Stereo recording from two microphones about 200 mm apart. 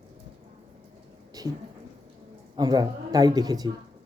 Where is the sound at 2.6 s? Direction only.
20° right (ahead or behind).